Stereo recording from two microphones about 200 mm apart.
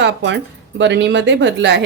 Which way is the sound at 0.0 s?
60° right (ahead or behind).